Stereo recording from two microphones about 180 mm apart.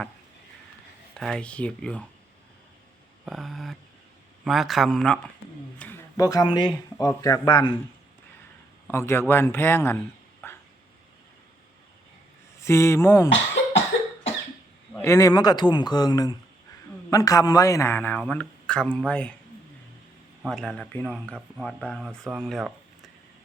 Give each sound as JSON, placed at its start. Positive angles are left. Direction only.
{"t": 1.2, "sound": "speech", "side_deg": 5}
{"t": 3.2, "sound": "speech", "side_deg": 0}
{"t": 8.9, "sound": "a man's voice", "side_deg": 15}
{"t": 10.4, "sound": "a sound", "side_deg": 15}
{"t": 12.6, "sound": "a man's voice", "side_deg": 15}
{"t": 14.9, "sound": "a man's voice", "side_deg": 15}
{"t": 20.4, "sound": "speech", "side_deg": 0}